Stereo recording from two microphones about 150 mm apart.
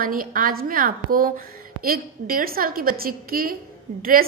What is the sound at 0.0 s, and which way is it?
A woman's voice, 65° right (ahead or behind).